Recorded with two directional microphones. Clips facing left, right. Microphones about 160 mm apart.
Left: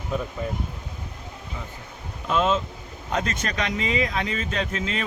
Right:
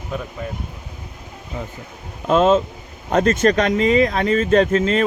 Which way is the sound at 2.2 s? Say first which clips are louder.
Right 8 dB; 40° right (ahead or behind).